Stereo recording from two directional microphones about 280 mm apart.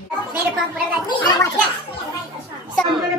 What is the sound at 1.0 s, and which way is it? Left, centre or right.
Speech, centre.